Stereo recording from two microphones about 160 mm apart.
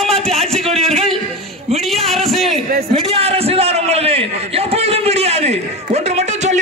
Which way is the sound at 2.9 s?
35° right (ahead or behind).